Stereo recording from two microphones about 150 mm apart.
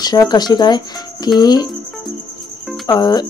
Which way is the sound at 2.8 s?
25° left (ahead or behind).